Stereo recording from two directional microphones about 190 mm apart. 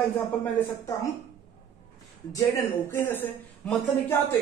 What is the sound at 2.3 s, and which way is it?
Speech, 15° left (ahead or behind).